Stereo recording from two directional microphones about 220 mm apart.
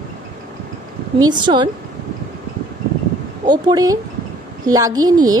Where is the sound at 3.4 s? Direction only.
20° right (ahead or behind).